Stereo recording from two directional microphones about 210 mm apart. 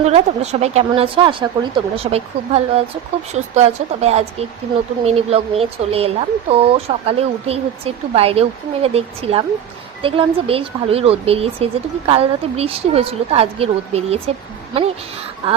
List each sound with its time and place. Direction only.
0.0 s speech: 30° right (ahead or behind)
15.4 s speech: 25° right (ahead or behind)